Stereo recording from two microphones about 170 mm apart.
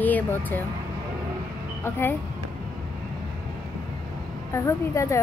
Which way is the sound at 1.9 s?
15° left (ahead or behind).